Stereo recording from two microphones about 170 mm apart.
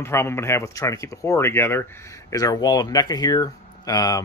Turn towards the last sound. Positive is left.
turn(degrees=20)  # may be behind; listen again after turning